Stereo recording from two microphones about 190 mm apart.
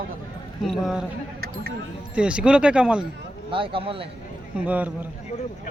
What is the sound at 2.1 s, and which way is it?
Speech, 5° right (ahead or behind).